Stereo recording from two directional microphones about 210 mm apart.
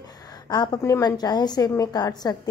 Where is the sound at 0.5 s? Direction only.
20° left (ahead or behind).